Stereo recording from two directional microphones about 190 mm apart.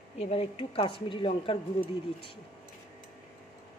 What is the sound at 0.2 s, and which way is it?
Speech, 30° left (ahead or behind).